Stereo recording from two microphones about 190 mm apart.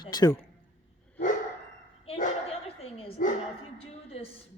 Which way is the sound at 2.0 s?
35° left (ahead or behind).